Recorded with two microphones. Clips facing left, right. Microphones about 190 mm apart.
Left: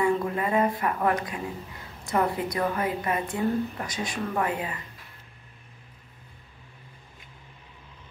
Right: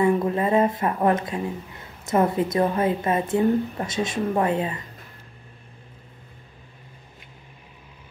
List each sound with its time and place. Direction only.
0.0 s a woman's voice: 25° right (ahead or behind)